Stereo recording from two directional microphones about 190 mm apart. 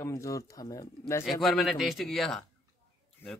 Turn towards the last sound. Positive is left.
turn(degrees=10)  # may be behind; listen again after turning